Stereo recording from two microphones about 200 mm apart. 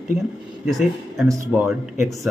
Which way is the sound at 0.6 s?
Centre (ahead or behind).